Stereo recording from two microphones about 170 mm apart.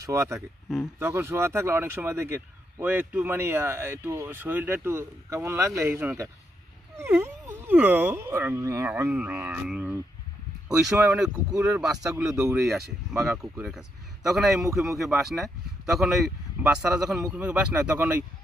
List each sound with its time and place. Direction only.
0.0 s speech: 15° right (ahead or behind)
12.5 s speech: 15° right (ahead or behind)
13.2 s speech: 5° right (ahead or behind)